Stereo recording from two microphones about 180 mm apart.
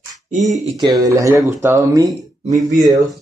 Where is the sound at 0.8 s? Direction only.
20° right (ahead or behind).